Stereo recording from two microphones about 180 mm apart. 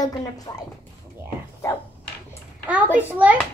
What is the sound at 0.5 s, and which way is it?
Speech, 20° left (ahead or behind).